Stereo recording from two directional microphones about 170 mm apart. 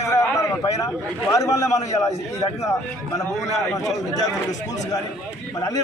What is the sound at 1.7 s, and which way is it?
Speech, 40° left (ahead or behind).